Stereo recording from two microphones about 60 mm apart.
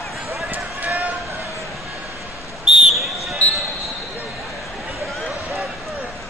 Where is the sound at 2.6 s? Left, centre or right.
Centre.